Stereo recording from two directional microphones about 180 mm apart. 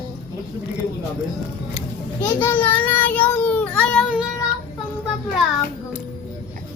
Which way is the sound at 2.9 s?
10° left (ahead or behind).